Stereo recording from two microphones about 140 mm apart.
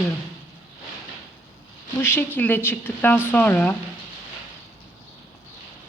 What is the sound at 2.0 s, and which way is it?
A woman's voice, 15° left (ahead or behind).